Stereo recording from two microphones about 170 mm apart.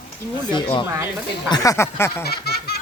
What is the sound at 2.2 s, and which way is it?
Baby laughter, 70° left (ahead or behind).